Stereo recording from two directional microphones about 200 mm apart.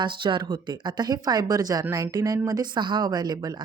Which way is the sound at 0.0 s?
25° right (ahead or behind).